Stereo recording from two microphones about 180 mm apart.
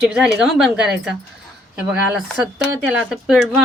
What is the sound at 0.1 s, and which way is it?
Speech, 5° right (ahead or behind).